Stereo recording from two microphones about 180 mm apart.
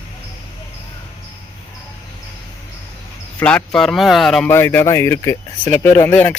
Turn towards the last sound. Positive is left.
turn(degrees=10)  # may be behind; listen again after turning